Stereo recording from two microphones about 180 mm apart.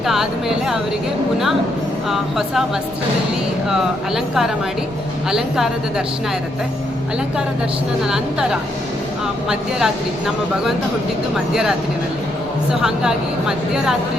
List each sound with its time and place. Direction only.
0.0 s a sound: centre (ahead or behind)
2.0 s a woman's voice: centre (ahead or behind)
3.7 s a woman's voice: 5° right (ahead or behind)
8.0 s a woman's voice: 5° right (ahead or behind)
12.8 s a woman's voice: 5° right (ahead or behind)